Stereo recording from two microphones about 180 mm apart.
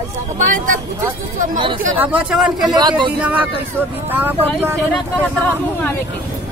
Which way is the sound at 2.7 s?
25° right (ahead or behind).